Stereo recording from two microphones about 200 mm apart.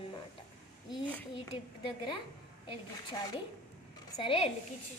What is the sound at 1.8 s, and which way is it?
Speech, 25° left (ahead or behind).